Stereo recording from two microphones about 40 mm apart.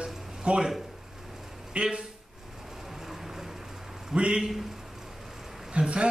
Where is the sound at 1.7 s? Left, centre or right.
Right.